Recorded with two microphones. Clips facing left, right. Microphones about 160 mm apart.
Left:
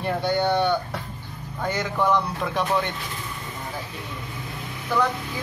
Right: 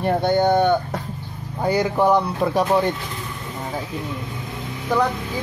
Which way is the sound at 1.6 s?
35° right (ahead or behind).